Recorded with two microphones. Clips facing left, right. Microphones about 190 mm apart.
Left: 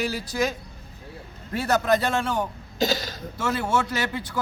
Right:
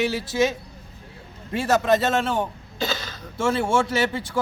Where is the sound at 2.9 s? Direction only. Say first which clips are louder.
Left 3 dB; 40° left (ahead or behind).